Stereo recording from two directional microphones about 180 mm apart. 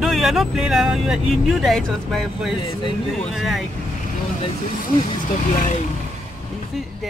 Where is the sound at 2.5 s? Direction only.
25° left (ahead or behind).